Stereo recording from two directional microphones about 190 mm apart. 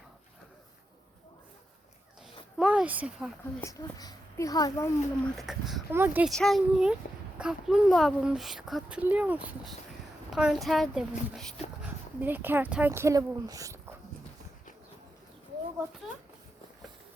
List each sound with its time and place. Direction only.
2.6 s speech: 5° right (ahead or behind)
3.6 s speech: 20° left (ahead or behind)
5.4 s speech: centre (ahead or behind)
6.3 s speech: centre (ahead or behind)
11.8 s speech: 10° right (ahead or behind)